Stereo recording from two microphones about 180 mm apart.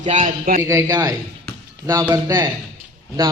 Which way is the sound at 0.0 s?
40° right (ahead or behind).